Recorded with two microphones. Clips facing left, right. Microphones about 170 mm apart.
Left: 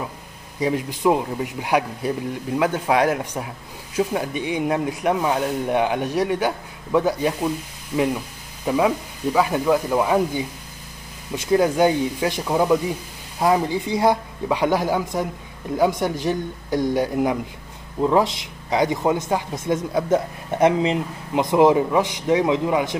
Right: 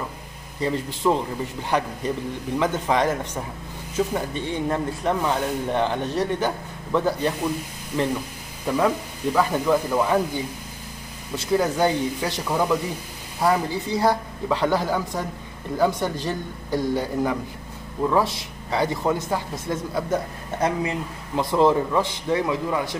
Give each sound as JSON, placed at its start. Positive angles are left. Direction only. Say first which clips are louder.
{"t": 0.6, "sound": "speech", "louder": "left 3 dB", "side_deg": 10}
{"t": 8.7, "sound": "speech", "louder": "left 2 dB", "side_deg": 10}